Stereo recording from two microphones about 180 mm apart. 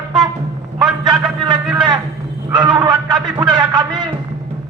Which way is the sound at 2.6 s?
25° right (ahead or behind).